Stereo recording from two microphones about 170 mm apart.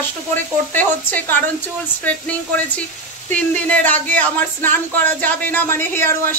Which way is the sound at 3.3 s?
10° left (ahead or behind).